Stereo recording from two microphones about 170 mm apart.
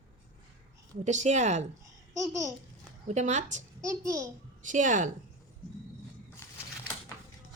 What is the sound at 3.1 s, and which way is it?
Speech, 45° right (ahead or behind).